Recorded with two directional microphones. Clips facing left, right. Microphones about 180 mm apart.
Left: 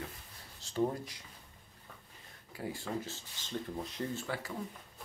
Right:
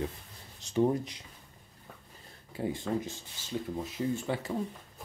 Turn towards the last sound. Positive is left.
turn(degrees=-20)  # may be behind; listen again after turning